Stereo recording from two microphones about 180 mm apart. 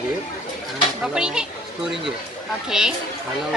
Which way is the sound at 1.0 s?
5° right (ahead or behind).